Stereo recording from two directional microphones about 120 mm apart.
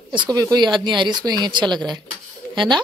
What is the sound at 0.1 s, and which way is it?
Speech, 35° right (ahead or behind).